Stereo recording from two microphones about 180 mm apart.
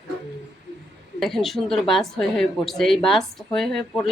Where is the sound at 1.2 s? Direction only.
Centre (ahead or behind).